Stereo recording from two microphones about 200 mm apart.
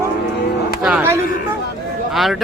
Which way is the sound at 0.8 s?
5° right (ahead or behind).